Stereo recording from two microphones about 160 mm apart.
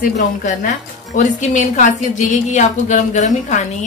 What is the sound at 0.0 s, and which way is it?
A woman's voice, 55° left (ahead or behind).